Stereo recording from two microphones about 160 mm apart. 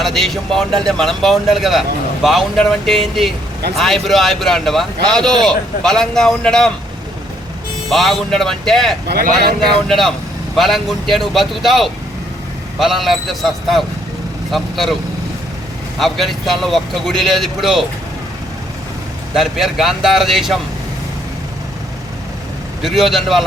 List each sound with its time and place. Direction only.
0.0 s speech: centre (ahead or behind)
7.9 s speech: centre (ahead or behind)
9.0 s speech: 80° right
9.9 s speech: centre (ahead or behind)
16.0 s speech: centre (ahead or behind)
19.3 s speech: 5° right (ahead or behind)
22.8 s speech: centre (ahead or behind)